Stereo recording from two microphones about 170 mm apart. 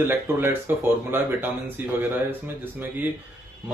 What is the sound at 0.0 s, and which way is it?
Speech, 15° right (ahead or behind).